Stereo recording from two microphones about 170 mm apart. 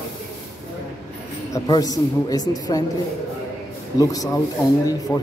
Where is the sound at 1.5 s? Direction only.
20° left (ahead or behind).